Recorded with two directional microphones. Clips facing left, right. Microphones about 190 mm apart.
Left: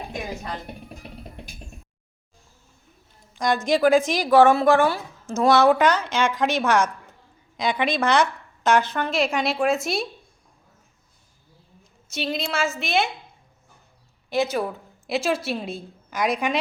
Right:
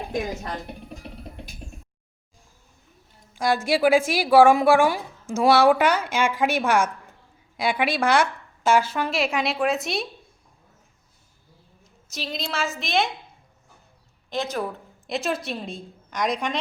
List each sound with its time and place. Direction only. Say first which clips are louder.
3.3 s speech: left 1 dB; 5° right (ahead or behind)
12.1 s a woman's voice: left 4 dB; centre (ahead or behind)
14.3 s a woman's voice: left 4 dB; 5° left (ahead or behind)